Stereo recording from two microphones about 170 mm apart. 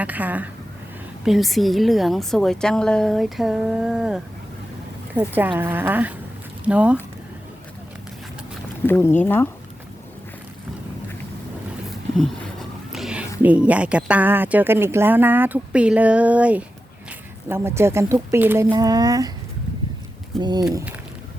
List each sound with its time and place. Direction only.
0.0 s a woman's voice: 10° right (ahead or behind)
8.9 s speech: 10° left (ahead or behind)
12.1 s a sound: centre (ahead or behind)
13.4 s speech: 10° right (ahead or behind)
20.4 s speech: 25° right (ahead or behind)